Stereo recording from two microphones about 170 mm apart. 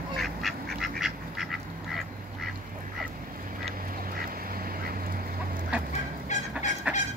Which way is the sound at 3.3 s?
50° right (ahead or behind).